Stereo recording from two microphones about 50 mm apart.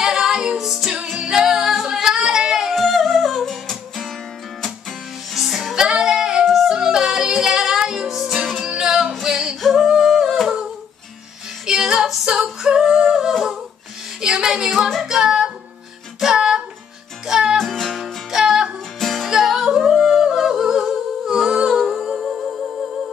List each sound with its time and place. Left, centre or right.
0.0 s music: centre
2.7 s music: centre
5.3 s music: centre
8.5 s music: centre
9.6 s humming: centre
11.6 s music: centre
12.3 s singing: centre
12.8 s humming: centre
13.3 s humming: centre
14.2 s child singing: centre
14.9 s music: centre
17.6 s music: centre
21.3 s humming: centre